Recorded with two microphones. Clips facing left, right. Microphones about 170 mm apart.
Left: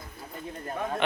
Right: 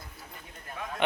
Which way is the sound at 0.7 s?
50° left (ahead or behind).